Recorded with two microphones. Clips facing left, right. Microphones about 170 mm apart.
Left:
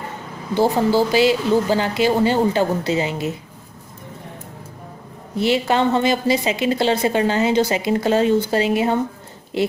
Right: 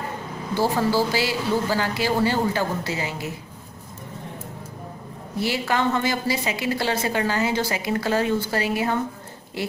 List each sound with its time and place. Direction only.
0.6 s a woman's voice: 20° left (ahead or behind)
5.4 s a woman's voice: 20° left (ahead or behind)